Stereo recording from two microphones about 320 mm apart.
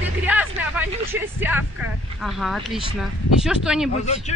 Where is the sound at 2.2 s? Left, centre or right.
Centre.